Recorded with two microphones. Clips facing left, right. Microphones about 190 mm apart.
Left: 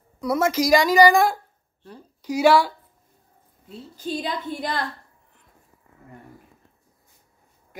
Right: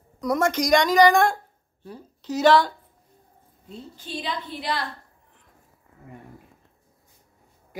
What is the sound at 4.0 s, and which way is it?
Speech, 45° left (ahead or behind).